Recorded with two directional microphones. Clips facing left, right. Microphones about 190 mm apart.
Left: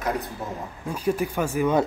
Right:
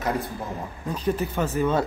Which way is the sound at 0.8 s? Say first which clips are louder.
Left 1 dB; 10° left (ahead or behind).